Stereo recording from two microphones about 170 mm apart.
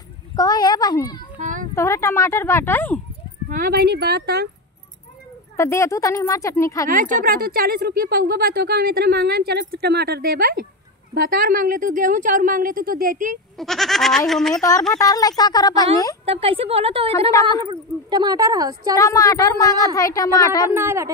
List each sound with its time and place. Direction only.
0.4 s a woman's voice: 25° left (ahead or behind)
1.4 s a sound: 50° right (ahead or behind)
1.8 s speech: 15° left (ahead or behind)
3.4 s speech: 55° right (ahead or behind); by 4.5 s 70° right (ahead or behind)
5.6 s a woman's voice: 15° left (ahead or behind)
6.9 s a woman's voice: 50° right (ahead or behind)
13.6 s speech: centre (ahead or behind)
14.5 s a woman's voice: 20° left (ahead or behind)
16.3 s a woman's voice: 35° right (ahead or behind)
18.9 s a woman's voice: 20° left (ahead or behind)
20.7 s speech: 15° right (ahead or behind)